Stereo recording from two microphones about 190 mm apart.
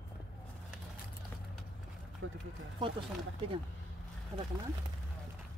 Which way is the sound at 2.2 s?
90° right.